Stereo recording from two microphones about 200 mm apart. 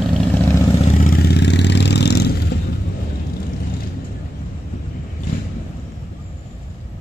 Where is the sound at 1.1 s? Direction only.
55° left (ahead or behind).